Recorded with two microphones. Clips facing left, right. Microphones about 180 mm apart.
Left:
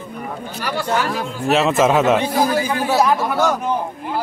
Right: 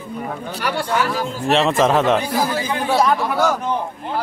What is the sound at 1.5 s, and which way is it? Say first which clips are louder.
A man's voice: left 1 dB; 5° left (ahead or behind).